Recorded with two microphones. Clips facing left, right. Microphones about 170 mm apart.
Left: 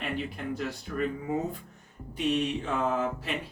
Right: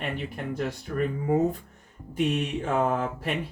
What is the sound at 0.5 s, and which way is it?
Mantra, 45° right (ahead or behind).